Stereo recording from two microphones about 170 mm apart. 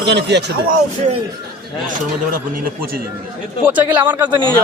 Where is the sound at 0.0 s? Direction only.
90° right.